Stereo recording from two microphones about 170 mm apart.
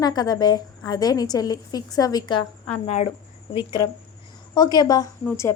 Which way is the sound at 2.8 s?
40° left (ahead or behind).